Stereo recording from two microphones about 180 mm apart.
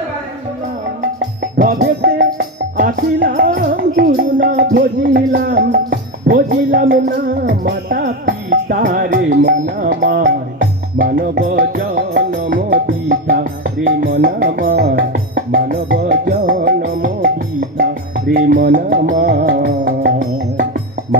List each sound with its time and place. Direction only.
1.2 s music: 55° right (ahead or behind)
2.0 s music: 80° right
2.3 s music: 50° right (ahead or behind)
3.5 s music: 60° right (ahead or behind)
10.6 s music: 60° right (ahead or behind)